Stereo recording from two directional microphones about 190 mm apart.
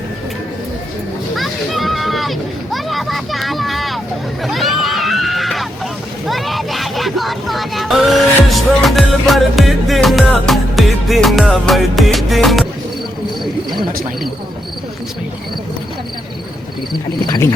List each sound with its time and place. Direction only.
1.4 s music: centre (ahead or behind)
2.7 s a sound: centre (ahead or behind)
6.2 s music: centre (ahead or behind)
16.9 s speech: 20° left (ahead or behind)